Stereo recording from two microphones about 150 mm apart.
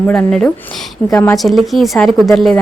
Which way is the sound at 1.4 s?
Centre (ahead or behind).